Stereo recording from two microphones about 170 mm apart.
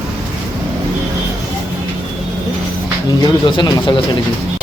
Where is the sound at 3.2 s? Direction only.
25° left (ahead or behind).